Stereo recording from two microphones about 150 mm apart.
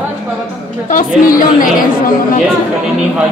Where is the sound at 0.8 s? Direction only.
65° left (ahead or behind).